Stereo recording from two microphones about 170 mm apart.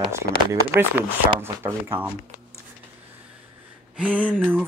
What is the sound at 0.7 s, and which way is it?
Speech, 15° right (ahead or behind).